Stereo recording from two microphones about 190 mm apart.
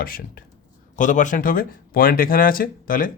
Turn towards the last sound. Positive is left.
turn(degrees=50)  # may be behind; listen again after turning